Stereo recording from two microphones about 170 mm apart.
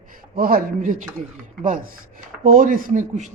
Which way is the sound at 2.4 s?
55° right (ahead or behind).